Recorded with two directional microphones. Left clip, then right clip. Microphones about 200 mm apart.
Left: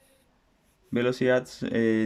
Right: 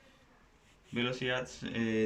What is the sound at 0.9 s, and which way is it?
Speech, 55° left (ahead or behind).